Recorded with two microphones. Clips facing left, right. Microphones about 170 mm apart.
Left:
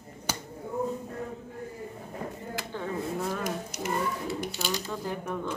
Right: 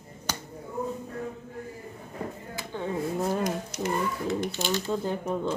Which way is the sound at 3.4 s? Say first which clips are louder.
Right 3 dB; 10° left (ahead or behind).